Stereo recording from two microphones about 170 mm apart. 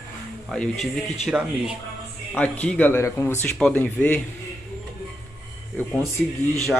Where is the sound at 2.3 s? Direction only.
10° left (ahead or behind).